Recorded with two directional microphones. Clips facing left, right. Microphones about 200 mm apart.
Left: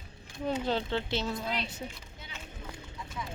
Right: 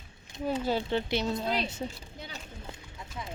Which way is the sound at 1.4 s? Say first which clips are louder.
Right 4 dB; 35° right (ahead or behind).